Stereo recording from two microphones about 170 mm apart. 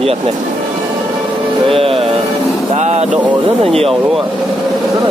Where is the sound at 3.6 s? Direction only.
35° right (ahead or behind).